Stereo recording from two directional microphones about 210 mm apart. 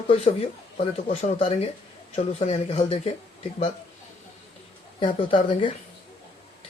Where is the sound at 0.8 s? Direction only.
30° left (ahead or behind).